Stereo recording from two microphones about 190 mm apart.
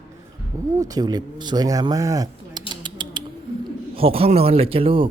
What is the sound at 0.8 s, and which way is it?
Speech, 20° right (ahead or behind).